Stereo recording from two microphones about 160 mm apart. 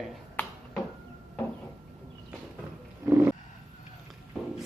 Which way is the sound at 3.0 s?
15° right (ahead or behind).